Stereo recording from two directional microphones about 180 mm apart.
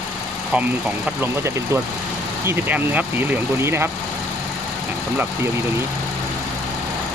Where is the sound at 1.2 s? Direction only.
15° right (ahead or behind).